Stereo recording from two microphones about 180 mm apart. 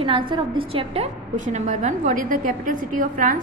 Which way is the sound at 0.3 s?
30° right (ahead or behind).